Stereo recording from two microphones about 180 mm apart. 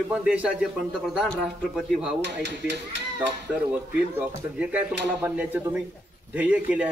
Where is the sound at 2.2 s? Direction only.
70° right (ahead or behind).